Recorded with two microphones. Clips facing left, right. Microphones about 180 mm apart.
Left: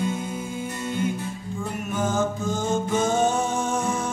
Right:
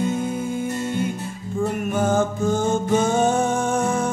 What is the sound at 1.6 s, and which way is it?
Music, 55° right (ahead or behind).